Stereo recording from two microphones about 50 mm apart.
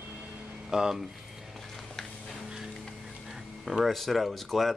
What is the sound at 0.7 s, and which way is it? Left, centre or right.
Speech, centre.